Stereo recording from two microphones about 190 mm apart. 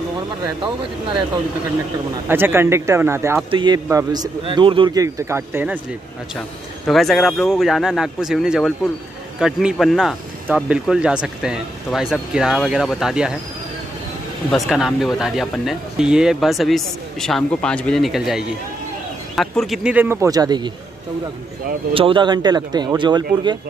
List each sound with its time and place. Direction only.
2.2 s speech: 10° right (ahead or behind)
3.4 s a man's voice: 25° right (ahead or behind)
6.9 s speech: centre (ahead or behind)
14.5 s speech: centre (ahead or behind); by 20.7 s 20° right (ahead or behind)
21.9 s a man's voice: 25° right (ahead or behind)